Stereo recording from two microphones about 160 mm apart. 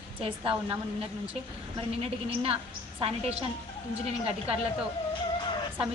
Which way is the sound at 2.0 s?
35° right (ahead or behind).